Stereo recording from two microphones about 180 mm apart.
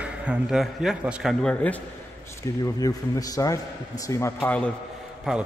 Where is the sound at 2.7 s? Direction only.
20° left (ahead or behind).